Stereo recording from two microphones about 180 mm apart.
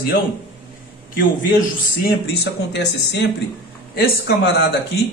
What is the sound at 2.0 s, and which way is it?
A man's voice, 65° left (ahead or behind).